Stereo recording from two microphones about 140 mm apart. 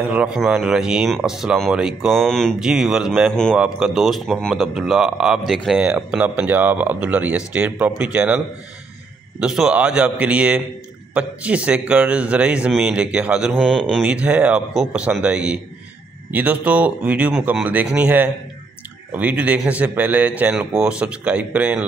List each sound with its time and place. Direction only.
0.0 s a man's voice: 10° right (ahead or behind)
9.4 s a man's voice: 5° right (ahead or behind)
14.0 s a man's voice: 10° right (ahead or behind)